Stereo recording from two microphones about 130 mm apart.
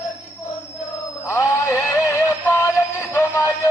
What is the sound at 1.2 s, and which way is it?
Neigh, 20° left (ahead or behind).